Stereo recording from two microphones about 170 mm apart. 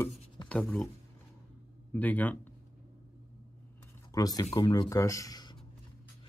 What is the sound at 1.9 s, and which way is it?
Speech, 10° left (ahead or behind).